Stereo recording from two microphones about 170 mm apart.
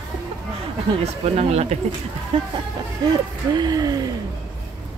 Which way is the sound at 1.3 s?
40° right (ahead or behind).